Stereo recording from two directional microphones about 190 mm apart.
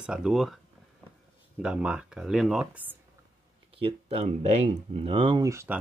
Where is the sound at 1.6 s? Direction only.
5° right (ahead or behind).